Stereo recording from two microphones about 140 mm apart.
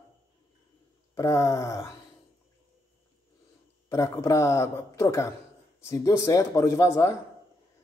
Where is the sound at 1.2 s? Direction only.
20° left (ahead or behind).